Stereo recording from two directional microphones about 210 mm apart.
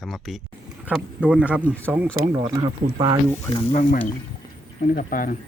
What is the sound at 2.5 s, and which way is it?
Speech, 20° right (ahead or behind).